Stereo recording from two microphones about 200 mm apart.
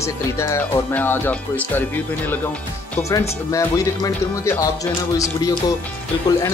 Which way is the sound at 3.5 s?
15° left (ahead or behind).